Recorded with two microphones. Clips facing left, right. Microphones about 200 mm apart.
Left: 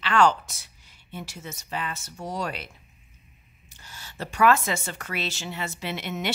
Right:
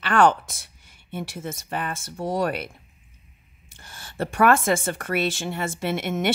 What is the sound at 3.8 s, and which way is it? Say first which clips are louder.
Speech: right 7 dB; 50° right (ahead or behind).